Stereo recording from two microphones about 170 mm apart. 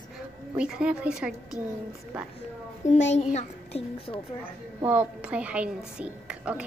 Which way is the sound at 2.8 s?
45° left (ahead or behind).